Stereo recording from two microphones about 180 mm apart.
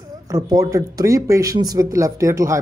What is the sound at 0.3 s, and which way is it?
Speech, 20° right (ahead or behind).